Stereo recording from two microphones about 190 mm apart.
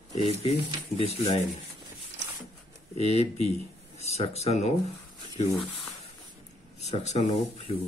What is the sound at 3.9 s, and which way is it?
Speech, 35° left (ahead or behind).